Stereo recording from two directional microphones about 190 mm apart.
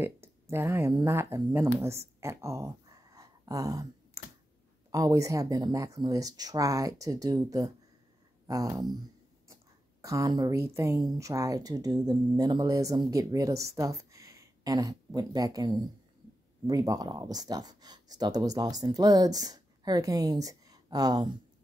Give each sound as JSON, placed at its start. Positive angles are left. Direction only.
{"t": 0.0, "sound": "speech", "side_deg": -15}
{"t": 1.8, "sound": "a sound", "side_deg": -15}
{"t": 4.9, "sound": "speech", "side_deg": -15}
{"t": 10.0, "sound": "speech", "side_deg": -15}